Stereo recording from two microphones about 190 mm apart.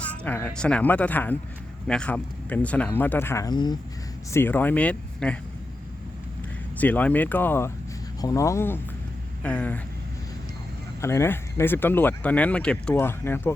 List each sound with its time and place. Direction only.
0.0 s speech: 10° left (ahead or behind)
4.3 s speech: 10° left (ahead or behind)
6.7 s speech: 10° left (ahead or behind)
11.0 s speech: 15° left (ahead or behind)